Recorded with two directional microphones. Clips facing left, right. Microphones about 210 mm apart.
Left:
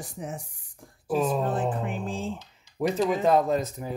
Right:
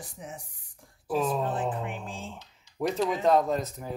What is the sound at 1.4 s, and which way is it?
Speech, 40° left (ahead or behind).